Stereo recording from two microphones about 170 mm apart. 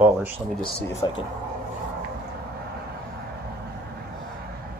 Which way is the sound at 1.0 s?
25° left (ahead or behind).